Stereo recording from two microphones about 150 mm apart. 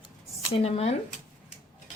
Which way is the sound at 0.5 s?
40° left (ahead or behind).